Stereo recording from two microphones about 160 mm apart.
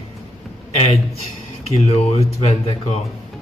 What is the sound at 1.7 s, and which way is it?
Speech, 40° left (ahead or behind).